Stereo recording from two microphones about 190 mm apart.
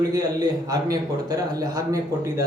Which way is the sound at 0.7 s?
20° right (ahead or behind).